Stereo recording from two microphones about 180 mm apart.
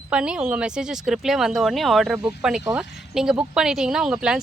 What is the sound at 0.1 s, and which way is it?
A woman's voice, 5° right (ahead or behind).